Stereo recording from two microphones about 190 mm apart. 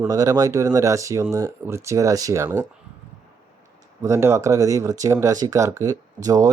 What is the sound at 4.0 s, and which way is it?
Speech, 15° right (ahead or behind).